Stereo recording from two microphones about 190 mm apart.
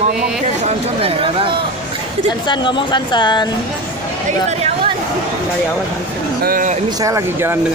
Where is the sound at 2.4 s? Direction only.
25° left (ahead or behind).